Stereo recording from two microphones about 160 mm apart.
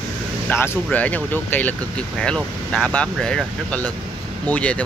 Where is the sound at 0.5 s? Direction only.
15° left (ahead or behind).